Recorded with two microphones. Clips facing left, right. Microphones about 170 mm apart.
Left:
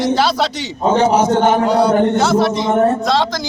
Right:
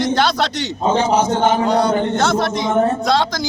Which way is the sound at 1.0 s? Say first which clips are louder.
Left 4 dB; 65° left (ahead or behind).